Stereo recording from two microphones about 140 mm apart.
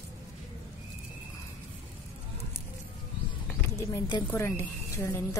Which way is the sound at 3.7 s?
20° left (ahead or behind).